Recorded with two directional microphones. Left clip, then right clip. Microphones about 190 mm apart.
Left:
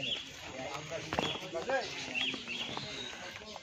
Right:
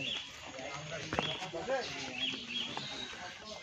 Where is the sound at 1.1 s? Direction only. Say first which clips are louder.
Left 1 dB; 20° left (ahead or behind).